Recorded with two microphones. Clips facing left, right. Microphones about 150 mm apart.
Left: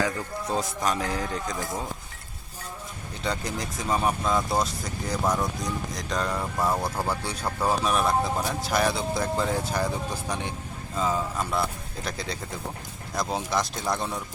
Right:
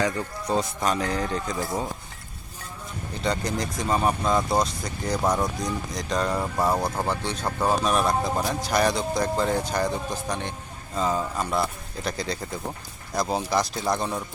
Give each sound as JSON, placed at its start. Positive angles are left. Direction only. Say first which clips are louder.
{"t": 0.0, "sound": "speech", "louder": "right 2 dB", "side_deg": 0}
{"t": 3.2, "sound": "speech", "louder": "right 3 dB", "side_deg": 5}
{"t": 5.2, "sound": "speech", "louder": "right 2 dB", "side_deg": -20}
{"t": 5.9, "sound": "speech", "louder": "right 4 dB", "side_deg": 0}
{"t": 6.3, "sound": "speech", "louder": "right 2 dB", "side_deg": -25}
{"t": 7.1, "sound": "speech", "louder": "right 2 dB", "side_deg": 5}
{"t": 7.4, "sound": "speech", "louder": "right 2 dB", "side_deg": -15}
{"t": 7.9, "sound": "speech", "louder": "right 1 dB", "side_deg": 0}